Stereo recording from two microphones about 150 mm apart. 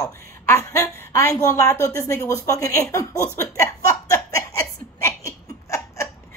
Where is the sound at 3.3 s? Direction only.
20° left (ahead or behind).